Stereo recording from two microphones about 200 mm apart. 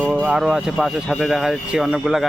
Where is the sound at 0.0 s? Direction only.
5° right (ahead or behind).